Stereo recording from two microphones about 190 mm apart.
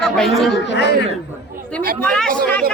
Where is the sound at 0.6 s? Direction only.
65° left (ahead or behind).